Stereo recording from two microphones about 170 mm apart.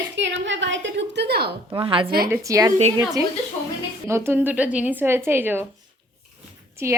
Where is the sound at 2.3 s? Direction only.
20° right (ahead or behind).